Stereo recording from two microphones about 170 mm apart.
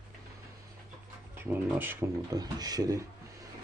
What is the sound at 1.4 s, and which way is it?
Speech, 10° right (ahead or behind).